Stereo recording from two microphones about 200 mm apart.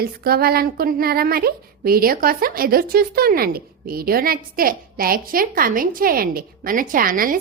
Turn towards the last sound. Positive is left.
turn(degrees=-45)  # may be behind; listen again after turning